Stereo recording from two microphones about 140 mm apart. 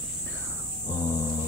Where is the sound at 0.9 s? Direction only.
20° left (ahead or behind).